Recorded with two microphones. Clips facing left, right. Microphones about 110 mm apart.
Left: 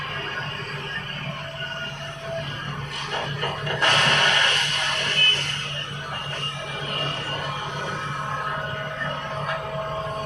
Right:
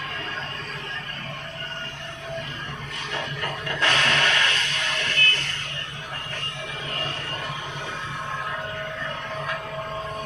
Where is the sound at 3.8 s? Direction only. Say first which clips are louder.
Left 1 dB; 25° left (ahead or behind).